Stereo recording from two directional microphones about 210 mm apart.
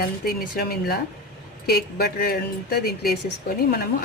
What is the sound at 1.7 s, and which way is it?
Speech, 50° left (ahead or behind).